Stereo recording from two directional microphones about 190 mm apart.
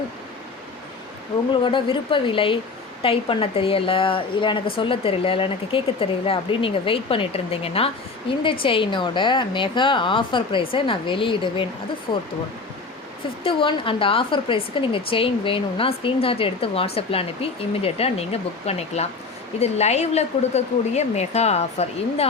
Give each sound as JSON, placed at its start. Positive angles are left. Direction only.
{"t": 1.6, "sound": "speech", "side_deg": 25}
{"t": 13.4, "sound": "a woman's voice", "side_deg": 25}